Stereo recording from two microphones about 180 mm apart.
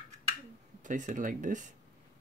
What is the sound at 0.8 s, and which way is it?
Speech, 45° right (ahead or behind).